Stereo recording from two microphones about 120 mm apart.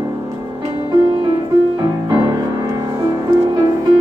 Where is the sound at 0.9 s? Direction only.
35° right (ahead or behind).